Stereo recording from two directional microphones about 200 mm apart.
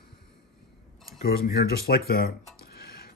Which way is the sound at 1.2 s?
50° left (ahead or behind).